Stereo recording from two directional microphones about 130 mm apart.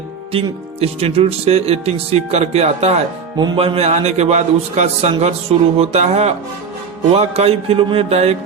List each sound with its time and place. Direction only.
0.3 s speech: 50° right (ahead or behind)
3.3 s music: 35° right (ahead or behind)
3.6 s a man's voice: 50° right (ahead or behind)